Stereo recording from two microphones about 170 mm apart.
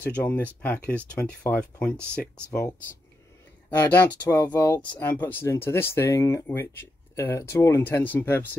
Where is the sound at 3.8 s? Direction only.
10° left (ahead or behind).